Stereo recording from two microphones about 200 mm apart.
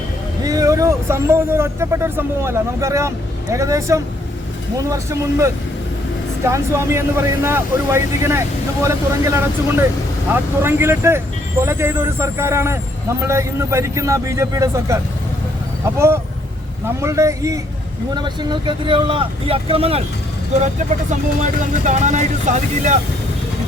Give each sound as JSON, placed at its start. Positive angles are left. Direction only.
{"t": 0.4, "sound": "a man's voice", "side_deg": -15}
{"t": 16.0, "sound": "a man's voice", "side_deg": -15}